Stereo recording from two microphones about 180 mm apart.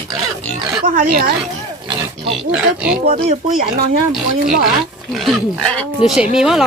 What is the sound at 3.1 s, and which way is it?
Speech, 35° right (ahead or behind).